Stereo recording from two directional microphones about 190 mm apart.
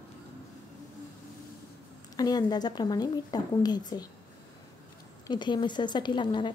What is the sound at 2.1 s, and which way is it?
A woman's voice, 20° left (ahead or behind).